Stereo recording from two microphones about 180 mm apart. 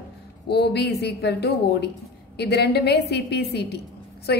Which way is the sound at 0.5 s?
65° left (ahead or behind).